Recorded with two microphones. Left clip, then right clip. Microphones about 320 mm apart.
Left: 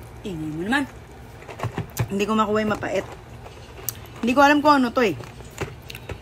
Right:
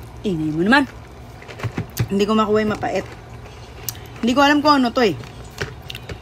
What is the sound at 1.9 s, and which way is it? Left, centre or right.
A man's voice, centre.